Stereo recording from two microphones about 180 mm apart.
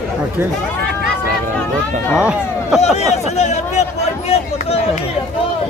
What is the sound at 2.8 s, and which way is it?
Speech, 35° left (ahead or behind).